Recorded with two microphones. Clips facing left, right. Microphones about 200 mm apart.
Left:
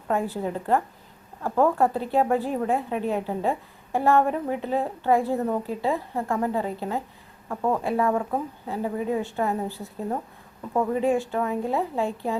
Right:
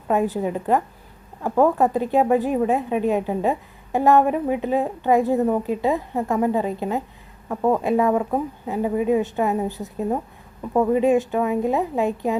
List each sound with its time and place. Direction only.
0.1 s a woman's voice: 15° right (ahead or behind)